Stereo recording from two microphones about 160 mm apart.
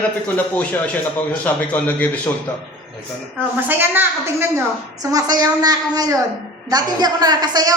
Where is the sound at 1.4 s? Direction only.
10° left (ahead or behind).